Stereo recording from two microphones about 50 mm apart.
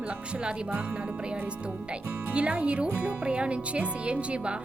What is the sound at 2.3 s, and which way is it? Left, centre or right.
Speech, right.